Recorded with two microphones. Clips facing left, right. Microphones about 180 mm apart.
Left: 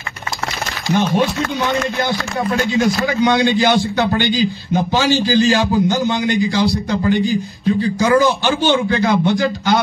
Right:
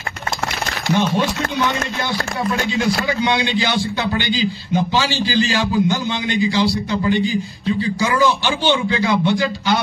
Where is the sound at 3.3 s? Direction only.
45° left (ahead or behind).